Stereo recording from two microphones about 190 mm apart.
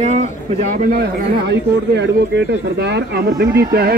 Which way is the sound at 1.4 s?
65° right (ahead or behind).